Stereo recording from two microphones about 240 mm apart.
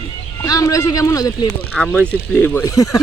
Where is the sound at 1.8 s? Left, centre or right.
Centre.